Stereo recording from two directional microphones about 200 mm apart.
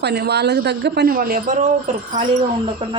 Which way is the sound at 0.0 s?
55° right (ahead or behind).